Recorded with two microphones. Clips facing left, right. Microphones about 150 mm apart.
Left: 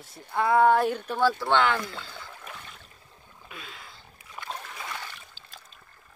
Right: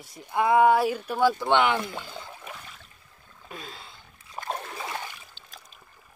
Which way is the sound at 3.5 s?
35° right (ahead or behind).